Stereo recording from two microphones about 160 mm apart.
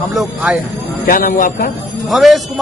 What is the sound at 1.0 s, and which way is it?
Speech, 65° left (ahead or behind).